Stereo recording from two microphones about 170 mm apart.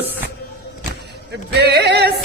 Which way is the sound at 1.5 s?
75° right (ahead or behind).